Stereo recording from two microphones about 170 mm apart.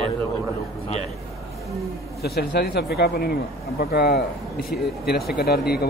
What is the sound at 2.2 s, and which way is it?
Speech, 70° left (ahead or behind).